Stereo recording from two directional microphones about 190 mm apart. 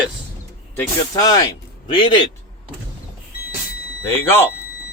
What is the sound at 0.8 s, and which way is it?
Speech, 20° left (ahead or behind).